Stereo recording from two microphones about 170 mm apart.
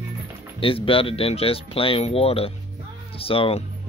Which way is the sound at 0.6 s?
30° left (ahead or behind).